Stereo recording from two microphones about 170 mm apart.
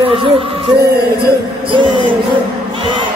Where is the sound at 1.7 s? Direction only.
30° right (ahead or behind).